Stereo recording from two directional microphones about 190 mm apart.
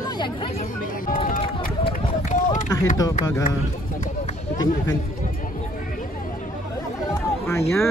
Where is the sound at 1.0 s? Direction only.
45° left (ahead or behind).